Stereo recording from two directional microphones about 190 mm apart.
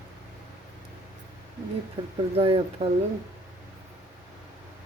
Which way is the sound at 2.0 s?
30° right (ahead or behind).